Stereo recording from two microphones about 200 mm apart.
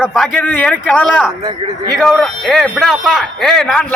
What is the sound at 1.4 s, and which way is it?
Speech, 20° right (ahead or behind).